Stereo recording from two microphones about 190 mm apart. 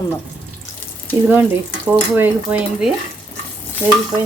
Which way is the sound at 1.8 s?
10° right (ahead or behind).